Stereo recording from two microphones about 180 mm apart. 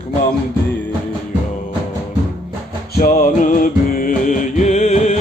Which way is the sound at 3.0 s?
45° left (ahead or behind).